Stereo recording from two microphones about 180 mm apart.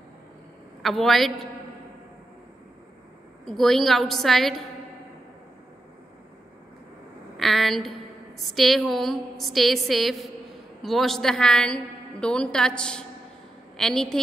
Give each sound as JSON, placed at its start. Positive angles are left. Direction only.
{"t": 0.8, "sound": "a woman's voice", "side_deg": 0}
{"t": 3.4, "sound": "a woman's voice", "side_deg": 0}
{"t": 7.3, "sound": "a woman's voice", "side_deg": 0}